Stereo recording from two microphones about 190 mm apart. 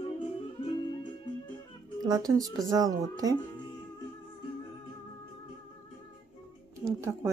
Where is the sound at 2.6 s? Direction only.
20° right (ahead or behind).